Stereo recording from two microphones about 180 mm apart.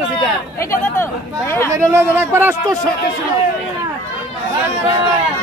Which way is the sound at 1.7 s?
15° right (ahead or behind).